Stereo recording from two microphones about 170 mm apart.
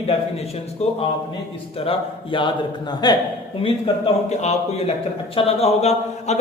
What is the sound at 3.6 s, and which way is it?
A man's voice, 35° left (ahead or behind).